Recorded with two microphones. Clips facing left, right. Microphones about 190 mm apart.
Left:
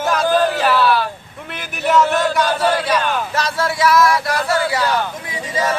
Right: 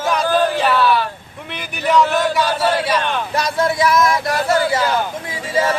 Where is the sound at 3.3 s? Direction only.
15° right (ahead or behind).